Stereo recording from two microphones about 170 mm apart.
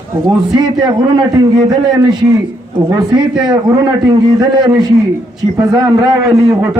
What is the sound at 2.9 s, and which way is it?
A man's voice, 25° right (ahead or behind).